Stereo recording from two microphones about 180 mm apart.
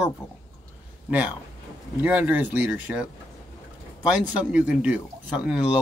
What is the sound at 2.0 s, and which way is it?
Speech, 10° right (ahead or behind).